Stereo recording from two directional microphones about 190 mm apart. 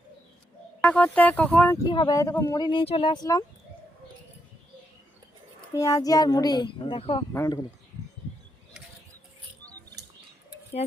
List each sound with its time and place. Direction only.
0.8 s speech: 10° left (ahead or behind)
1.9 s speech: 20° left (ahead or behind)
5.7 s speech: 20° left (ahead or behind)
7.3 s speech: 15° left (ahead or behind)